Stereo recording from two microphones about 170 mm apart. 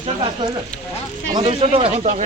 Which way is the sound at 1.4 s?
35° right (ahead or behind).